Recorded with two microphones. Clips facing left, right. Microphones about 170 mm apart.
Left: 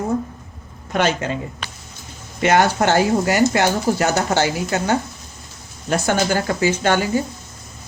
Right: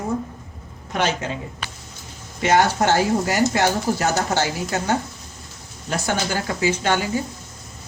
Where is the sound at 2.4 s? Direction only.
60° left (ahead or behind).